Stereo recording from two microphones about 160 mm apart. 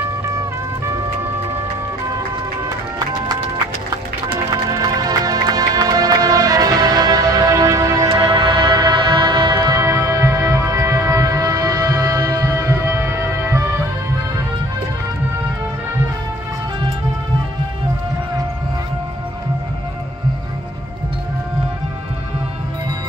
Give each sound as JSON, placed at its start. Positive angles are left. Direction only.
{"t": 4.5, "sound": "music", "side_deg": -20}